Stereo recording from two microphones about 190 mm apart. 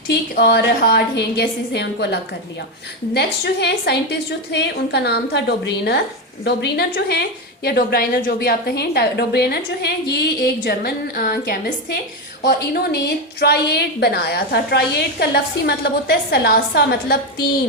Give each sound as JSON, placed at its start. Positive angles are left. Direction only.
{"t": 0.1, "sound": "a woman's voice", "side_deg": 55}
{"t": 3.2, "sound": "a woman's voice", "side_deg": 60}